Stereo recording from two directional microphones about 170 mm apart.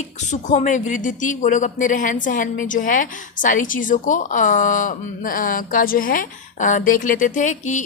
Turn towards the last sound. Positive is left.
turn(degrees=45)  # may be behind; listen again after turning